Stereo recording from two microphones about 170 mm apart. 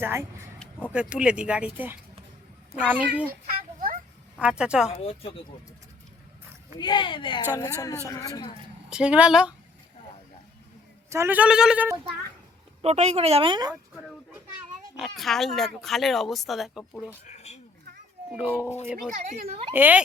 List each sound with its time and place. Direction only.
0.0 s speech: 15° right (ahead or behind)
3.4 s a sound: 55° right (ahead or behind)
4.4 s speech: 5° right (ahead or behind)
4.9 s speech: 35° left (ahead or behind)
6.7 s speech: 25° left (ahead or behind)
8.9 s speech: 5° right (ahead or behind)
11.1 s speech: 15° right (ahead or behind)
12.8 s speech: 40° right (ahead or behind)
14.9 s speech: centre (ahead or behind)
17.2 s speech: 40° left (ahead or behind)
18.3 s speech: 5° right (ahead or behind)
19.1 s speech: 50° right (ahead or behind)
19.7 s speech: 10° right (ahead or behind)